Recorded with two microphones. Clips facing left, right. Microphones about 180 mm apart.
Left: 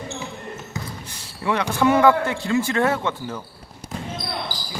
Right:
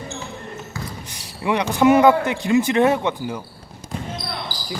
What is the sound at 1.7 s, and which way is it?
Speech, 20° right (ahead or behind).